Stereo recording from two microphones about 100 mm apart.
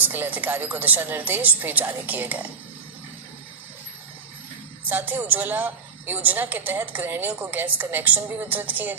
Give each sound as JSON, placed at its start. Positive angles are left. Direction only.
{"t": 0.0, "sound": "a woman's voice", "side_deg": -20}
{"t": 4.8, "sound": "a woman's voice", "side_deg": -20}